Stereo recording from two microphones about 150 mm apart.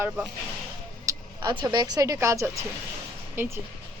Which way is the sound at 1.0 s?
30° right (ahead or behind).